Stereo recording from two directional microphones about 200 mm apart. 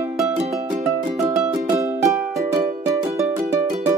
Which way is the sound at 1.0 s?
15° right (ahead or behind).